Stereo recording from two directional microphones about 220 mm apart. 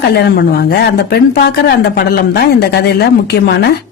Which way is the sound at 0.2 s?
45° left (ahead or behind).